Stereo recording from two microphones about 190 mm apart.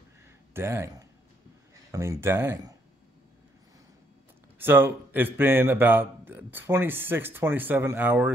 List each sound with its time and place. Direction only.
0.6 s speech: 15° right (ahead or behind)
4.6 s speech: 10° right (ahead or behind)